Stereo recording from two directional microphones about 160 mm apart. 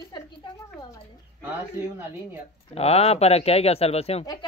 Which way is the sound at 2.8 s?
40° left (ahead or behind).